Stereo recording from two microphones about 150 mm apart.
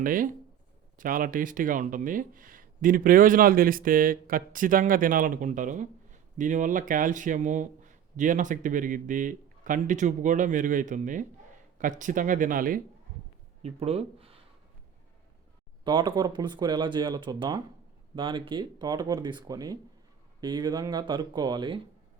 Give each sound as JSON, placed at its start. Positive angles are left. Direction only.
{"t": 0.0, "sound": "speech", "side_deg": -65}
{"t": 13.6, "sound": "speech", "side_deg": -45}
{"t": 15.8, "sound": "speech", "side_deg": -30}